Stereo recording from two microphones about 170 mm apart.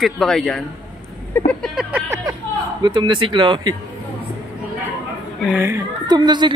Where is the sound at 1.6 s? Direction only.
5° right (ahead or behind).